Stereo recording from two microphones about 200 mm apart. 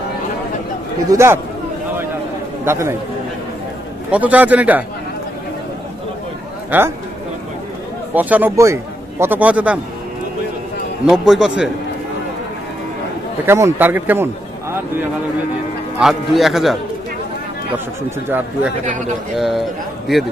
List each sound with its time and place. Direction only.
1.0 s a man's voice: 15° right (ahead or behind)
2.6 s a man's voice: 15° right (ahead or behind)
4.1 s a man's voice: 5° right (ahead or behind)
6.7 s a man's voice: 10° right (ahead or behind)
8.1 s a man's voice: 10° right (ahead or behind)
11.1 s speech: 5° right (ahead or behind)
13.5 s a man's voice: 15° right (ahead or behind)
16.0 s speech: centre (ahead or behind)
18.9 s speech: 40° right (ahead or behind)
19.3 s speech: centre (ahead or behind)